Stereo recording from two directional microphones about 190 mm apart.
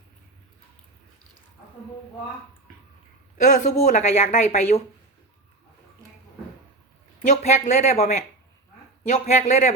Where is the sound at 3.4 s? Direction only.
40° left (ahead or behind).